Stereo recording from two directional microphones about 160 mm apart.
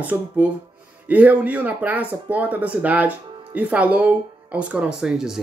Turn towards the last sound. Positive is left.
turn(degrees=-5)  # may be behind; listen again after turning